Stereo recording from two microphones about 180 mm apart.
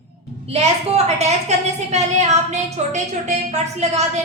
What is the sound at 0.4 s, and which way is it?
A woman's voice, 35° right (ahead or behind).